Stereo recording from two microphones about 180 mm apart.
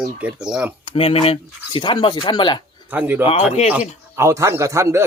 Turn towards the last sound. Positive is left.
turn(degrees=-15)  # may be behind; listen again after turning